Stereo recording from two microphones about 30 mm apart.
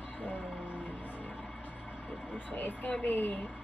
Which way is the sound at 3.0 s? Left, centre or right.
Left.